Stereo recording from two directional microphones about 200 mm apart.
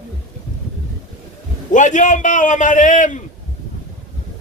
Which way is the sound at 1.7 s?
40° left (ahead or behind).